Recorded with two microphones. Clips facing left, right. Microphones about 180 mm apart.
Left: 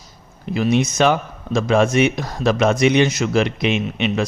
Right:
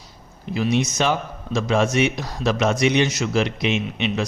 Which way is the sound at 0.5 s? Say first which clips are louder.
Left 3 dB; 55° left (ahead or behind).